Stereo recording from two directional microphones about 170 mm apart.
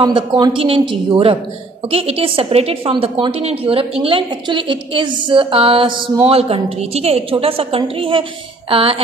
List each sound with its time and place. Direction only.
0.0 s a woman's voice: 25° right (ahead or behind)